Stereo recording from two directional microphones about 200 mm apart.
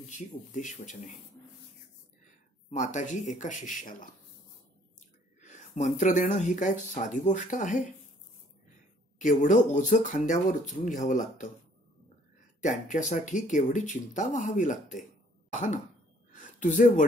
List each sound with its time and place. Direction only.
0.5 s speech: 40° left (ahead or behind)
2.7 s speech: 35° left (ahead or behind)
5.4 s speech: 35° left (ahead or behind)
9.2 s speech: 40° left (ahead or behind)
12.6 s speech: 40° left (ahead or behind)
16.3 s a sound: 40° left (ahead or behind)